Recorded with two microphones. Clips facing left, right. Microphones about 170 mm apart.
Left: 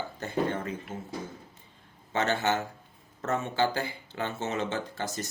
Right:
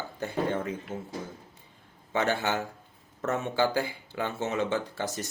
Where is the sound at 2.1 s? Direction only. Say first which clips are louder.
Even; 15° right (ahead or behind).